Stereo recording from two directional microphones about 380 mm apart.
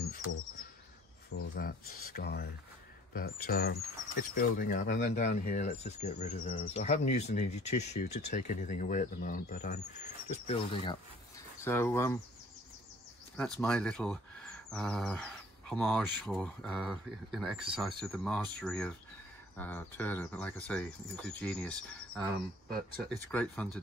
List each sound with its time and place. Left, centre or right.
1.3 s speech: left; by 12.2 s centre
13.4 s speech: centre